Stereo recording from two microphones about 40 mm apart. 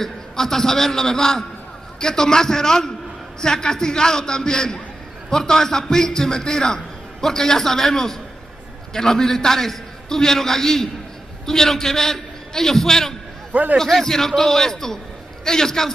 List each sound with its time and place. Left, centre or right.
0.0 s a man's voice: centre
13.5 s a man's voice: right
13.7 s a man's voice: centre